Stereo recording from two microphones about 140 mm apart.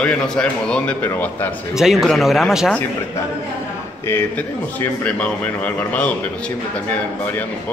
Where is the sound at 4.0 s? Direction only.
15° left (ahead or behind).